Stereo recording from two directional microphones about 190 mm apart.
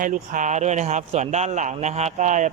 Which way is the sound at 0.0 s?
40° right (ahead or behind).